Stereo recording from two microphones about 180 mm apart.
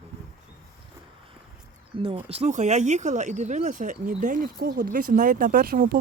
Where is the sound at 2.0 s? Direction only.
30° right (ahead or behind).